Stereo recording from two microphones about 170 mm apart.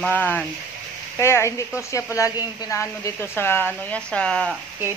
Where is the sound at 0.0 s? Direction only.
10° left (ahead or behind).